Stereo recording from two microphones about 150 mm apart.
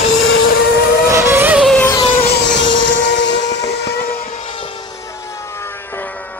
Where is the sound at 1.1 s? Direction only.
15° right (ahead or behind).